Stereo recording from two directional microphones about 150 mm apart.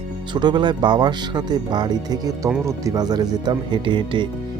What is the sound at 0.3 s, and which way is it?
Speech, 30° right (ahead or behind).